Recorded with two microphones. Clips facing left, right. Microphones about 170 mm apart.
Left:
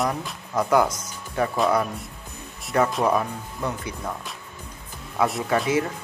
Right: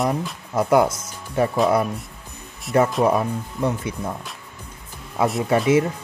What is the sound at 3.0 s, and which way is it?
Speech, 25° right (ahead or behind).